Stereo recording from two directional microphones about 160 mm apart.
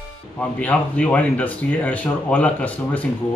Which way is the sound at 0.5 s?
10° left (ahead or behind).